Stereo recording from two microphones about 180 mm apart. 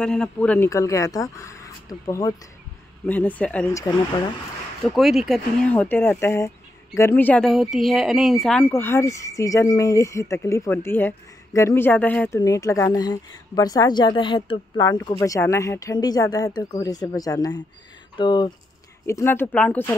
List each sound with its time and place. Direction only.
0.0 s speech: 5° left (ahead or behind)
4.9 s speech: centre (ahead or behind)
5.7 s speech: 10° left (ahead or behind); by 18.5 s 25° left (ahead or behind)
19.0 s speech: 15° left (ahead or behind)